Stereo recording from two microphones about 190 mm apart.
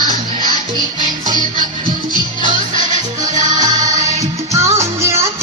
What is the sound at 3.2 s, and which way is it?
Music, 40° right (ahead or behind).